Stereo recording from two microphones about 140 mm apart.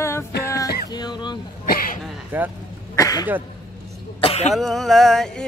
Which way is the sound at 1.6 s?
90° left.